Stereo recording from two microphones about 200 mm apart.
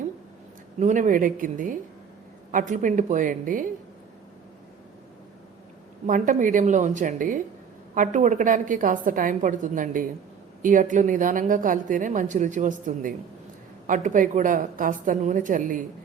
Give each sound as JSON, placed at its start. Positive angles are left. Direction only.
{"t": 0.8, "sound": "a woman's voice", "side_deg": -40}
{"t": 6.1, "sound": "a woman's voice", "side_deg": -40}